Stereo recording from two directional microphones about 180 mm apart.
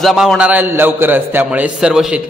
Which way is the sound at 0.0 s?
Centre (ahead or behind).